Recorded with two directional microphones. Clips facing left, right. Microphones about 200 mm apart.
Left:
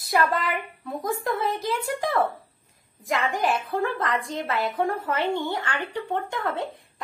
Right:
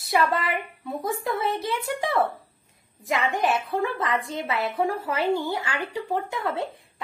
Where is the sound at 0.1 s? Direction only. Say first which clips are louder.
Even; centre (ahead or behind).